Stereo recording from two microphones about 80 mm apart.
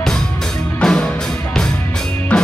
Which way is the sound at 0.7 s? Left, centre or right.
Centre.